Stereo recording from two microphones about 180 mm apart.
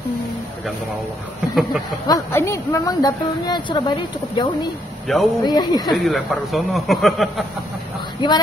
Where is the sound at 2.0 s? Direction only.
15° left (ahead or behind).